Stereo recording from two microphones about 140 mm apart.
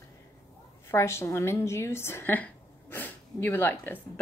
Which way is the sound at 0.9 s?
20° left (ahead or behind).